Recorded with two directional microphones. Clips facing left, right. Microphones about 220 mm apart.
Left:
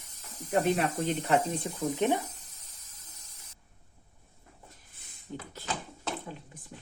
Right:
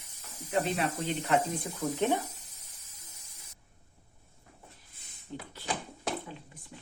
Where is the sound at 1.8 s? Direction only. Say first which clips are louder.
Left 1 dB; 15° left (ahead or behind).